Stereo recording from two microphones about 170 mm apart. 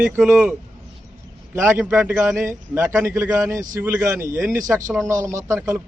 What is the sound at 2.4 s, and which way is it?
Speech, 15° right (ahead or behind).